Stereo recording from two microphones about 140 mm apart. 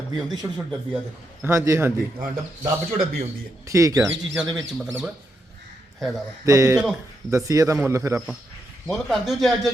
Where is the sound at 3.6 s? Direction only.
20° right (ahead or behind).